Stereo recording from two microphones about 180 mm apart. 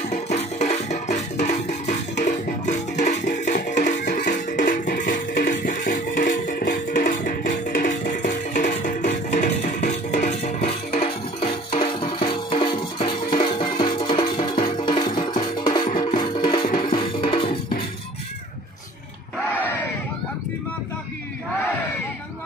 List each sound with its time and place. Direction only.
0.1 s music: 40° left (ahead or behind)